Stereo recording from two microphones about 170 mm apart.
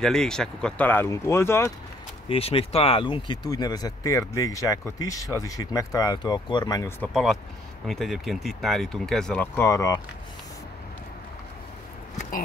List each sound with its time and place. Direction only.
0.0 s speech: 5° left (ahead or behind)
2.2 s speech: 35° left (ahead or behind)
7.0 s speech: centre (ahead or behind); by 10.0 s 20° left (ahead or behind)